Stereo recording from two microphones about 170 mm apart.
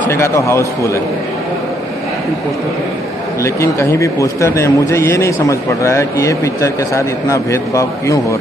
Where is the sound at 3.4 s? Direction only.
15° left (ahead or behind).